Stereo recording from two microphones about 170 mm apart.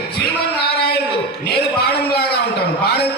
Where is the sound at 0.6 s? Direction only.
65° left (ahead or behind).